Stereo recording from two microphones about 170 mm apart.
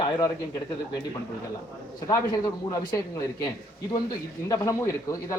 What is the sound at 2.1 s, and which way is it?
Speech, 20° left (ahead or behind).